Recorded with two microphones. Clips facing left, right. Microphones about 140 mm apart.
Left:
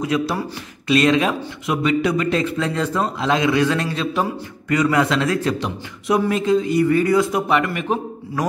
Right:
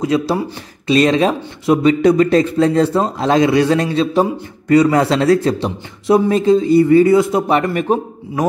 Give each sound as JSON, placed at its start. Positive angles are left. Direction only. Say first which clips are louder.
{"t": 0.0, "sound": "a man's voice", "louder": "right 5 dB", "side_deg": -30}